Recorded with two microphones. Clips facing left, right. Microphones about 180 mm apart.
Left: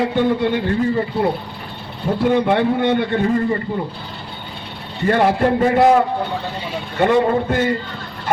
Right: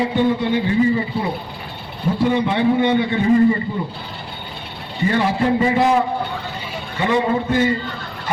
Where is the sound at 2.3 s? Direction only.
55° left (ahead or behind).